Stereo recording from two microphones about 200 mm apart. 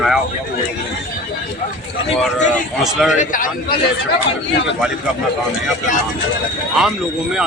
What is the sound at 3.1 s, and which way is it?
Speech, 40° left (ahead or behind).